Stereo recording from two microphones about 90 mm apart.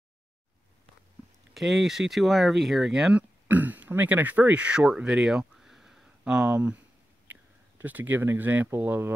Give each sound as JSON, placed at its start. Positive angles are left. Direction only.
{"t": 1.5, "sound": "speech", "side_deg": 0}
{"t": 7.8, "sound": "speech", "side_deg": -20}